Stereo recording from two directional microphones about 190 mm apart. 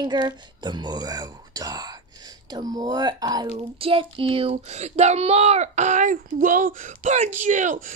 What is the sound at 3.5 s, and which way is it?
Child singing, 30° right (ahead or behind).